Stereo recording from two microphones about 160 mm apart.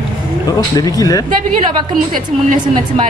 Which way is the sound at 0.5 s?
25° left (ahead or behind).